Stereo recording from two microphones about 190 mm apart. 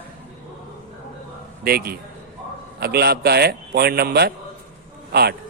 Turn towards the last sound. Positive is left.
turn(degrees=-55)  # may be behind; listen again after turning